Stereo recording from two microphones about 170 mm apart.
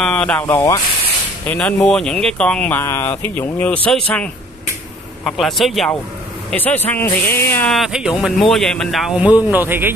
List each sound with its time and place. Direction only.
0.0 s speech: 5° left (ahead or behind)
0.5 s speech: 25° left (ahead or behind)
1.5 s speech: 5° left (ahead or behind)
5.2 s speech: centre (ahead or behind)
7.7 s speech: centre (ahead or behind)